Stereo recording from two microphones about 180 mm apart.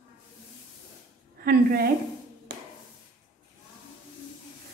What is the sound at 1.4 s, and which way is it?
Speech, 60° right (ahead or behind).